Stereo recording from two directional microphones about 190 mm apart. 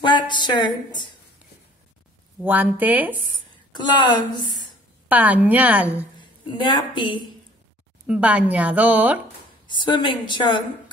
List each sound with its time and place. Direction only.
0.0 s a woman's voice: 25° left (ahead or behind)
2.4 s a woman's voice: 10° right (ahead or behind)
3.7 s a woman's voice: 25° left (ahead or behind)
5.0 s a woman's voice: 10° right (ahead or behind)
6.1 s a woman's voice: 25° left (ahead or behind)
8.1 s a woman's voice: 5° right (ahead or behind)
9.7 s a woman's voice: 25° left (ahead or behind)